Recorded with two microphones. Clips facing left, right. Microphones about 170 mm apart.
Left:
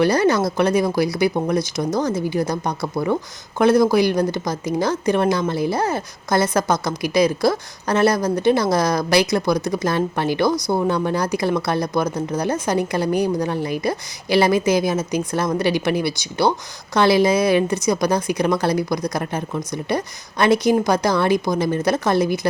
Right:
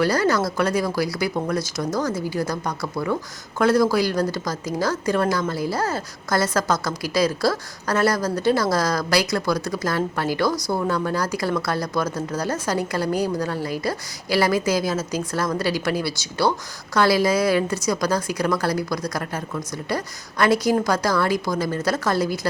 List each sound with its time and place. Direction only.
0.0 s speech: 20° left (ahead or behind)